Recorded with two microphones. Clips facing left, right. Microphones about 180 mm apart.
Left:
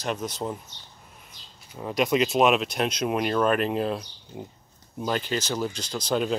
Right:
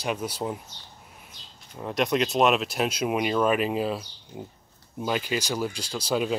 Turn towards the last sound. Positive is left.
turn(degrees=-5)  # may be behind; listen again after turning